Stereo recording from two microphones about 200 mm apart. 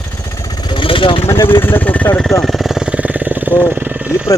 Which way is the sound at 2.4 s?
Centre (ahead or behind).